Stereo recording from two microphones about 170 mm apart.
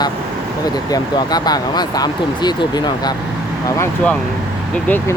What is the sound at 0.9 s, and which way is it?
Speech, 25° left (ahead or behind).